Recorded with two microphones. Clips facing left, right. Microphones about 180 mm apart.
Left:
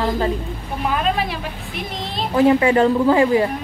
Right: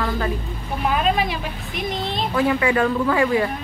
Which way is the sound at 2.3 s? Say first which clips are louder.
Left 6 dB; 25° left (ahead or behind).